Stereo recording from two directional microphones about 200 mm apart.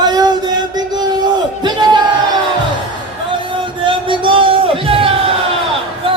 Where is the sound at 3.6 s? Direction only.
25° right (ahead or behind).